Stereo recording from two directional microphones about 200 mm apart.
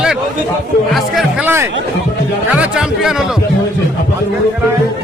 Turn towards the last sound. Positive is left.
turn(degrees=-5)  # may be behind; listen again after turning